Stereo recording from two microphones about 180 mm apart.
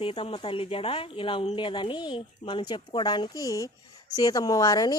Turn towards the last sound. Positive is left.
turn(degrees=20)  # may be behind; listen again after turning